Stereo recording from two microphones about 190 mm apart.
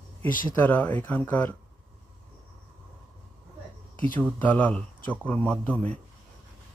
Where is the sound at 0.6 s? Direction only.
10° left (ahead or behind).